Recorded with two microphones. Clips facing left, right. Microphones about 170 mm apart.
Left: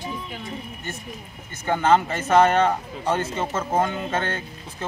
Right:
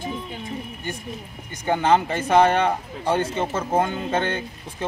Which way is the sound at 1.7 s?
15° right (ahead or behind).